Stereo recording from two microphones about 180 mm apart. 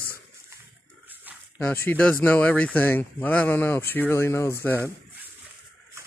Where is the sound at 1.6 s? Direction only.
10° left (ahead or behind).